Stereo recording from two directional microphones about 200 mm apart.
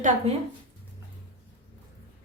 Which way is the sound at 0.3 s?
30° right (ahead or behind).